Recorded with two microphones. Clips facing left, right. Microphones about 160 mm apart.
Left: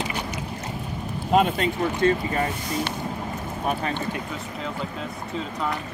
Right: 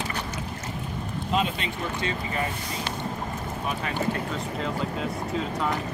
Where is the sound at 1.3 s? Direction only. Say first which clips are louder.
Left 7 dB; 50° left (ahead or behind).